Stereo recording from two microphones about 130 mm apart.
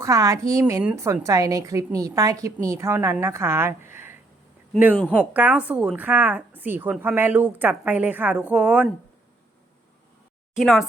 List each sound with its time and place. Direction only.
0.0 s a woman's voice: 25° right (ahead or behind)
5.0 s a woman's voice: 10° right (ahead or behind)
10.5 s speech: centre (ahead or behind)